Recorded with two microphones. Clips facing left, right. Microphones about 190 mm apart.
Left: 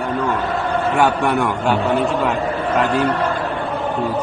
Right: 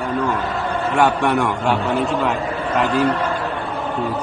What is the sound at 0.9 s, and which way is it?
Speech, centre (ahead or behind).